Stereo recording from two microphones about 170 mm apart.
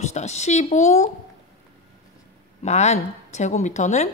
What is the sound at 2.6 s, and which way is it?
Speech, 40° left (ahead or behind).